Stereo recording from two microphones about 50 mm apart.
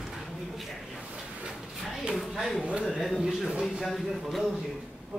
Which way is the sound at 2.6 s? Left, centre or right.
Right.